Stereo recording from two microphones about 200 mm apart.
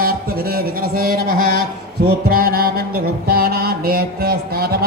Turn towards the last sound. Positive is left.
turn(degrees=-50)  # may be behind; listen again after turning